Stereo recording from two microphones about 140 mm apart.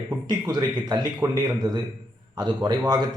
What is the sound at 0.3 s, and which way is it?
Speech, 30° right (ahead or behind).